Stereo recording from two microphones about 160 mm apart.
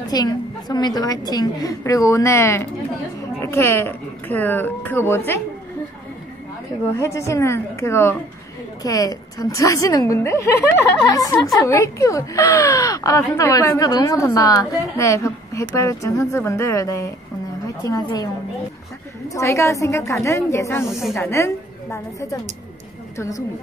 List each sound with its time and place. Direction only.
0.1 s a woman's voice: 25° left (ahead or behind)
7.0 s a woman's voice: 20° left (ahead or behind)
11.5 s a woman's voice: 20° left (ahead or behind)